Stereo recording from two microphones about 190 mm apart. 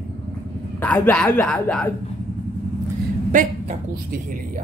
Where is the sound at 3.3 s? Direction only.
40° right (ahead or behind).